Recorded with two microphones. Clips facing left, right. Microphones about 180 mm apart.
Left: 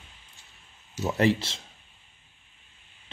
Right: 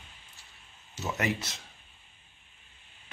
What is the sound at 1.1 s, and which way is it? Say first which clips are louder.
Speech: left 8 dB; 30° left (ahead or behind).